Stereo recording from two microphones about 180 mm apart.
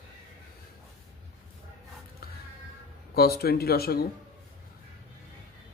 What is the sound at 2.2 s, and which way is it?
Music, 55° left (ahead or behind).